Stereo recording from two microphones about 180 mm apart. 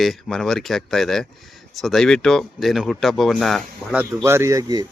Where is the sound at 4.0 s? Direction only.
15° right (ahead or behind).